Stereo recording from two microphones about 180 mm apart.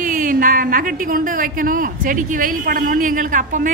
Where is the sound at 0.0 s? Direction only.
45° right (ahead or behind).